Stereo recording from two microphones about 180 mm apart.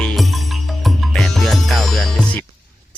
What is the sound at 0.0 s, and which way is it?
Music, 5° left (ahead or behind).